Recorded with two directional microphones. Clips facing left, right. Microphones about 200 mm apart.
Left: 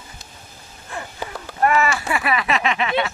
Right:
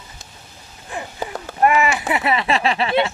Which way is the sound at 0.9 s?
15° right (ahead or behind).